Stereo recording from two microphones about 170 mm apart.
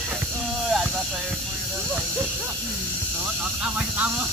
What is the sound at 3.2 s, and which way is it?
Speech, 5° right (ahead or behind).